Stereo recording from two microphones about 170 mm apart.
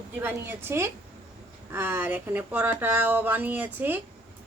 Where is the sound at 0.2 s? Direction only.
15° right (ahead or behind).